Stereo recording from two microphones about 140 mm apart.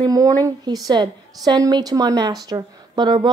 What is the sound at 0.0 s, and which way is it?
Speech, 25° right (ahead or behind).